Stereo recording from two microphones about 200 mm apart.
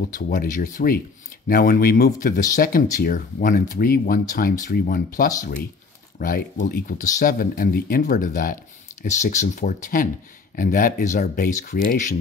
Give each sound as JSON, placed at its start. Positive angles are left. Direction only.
{"t": 0.1, "sound": "speech", "side_deg": 40}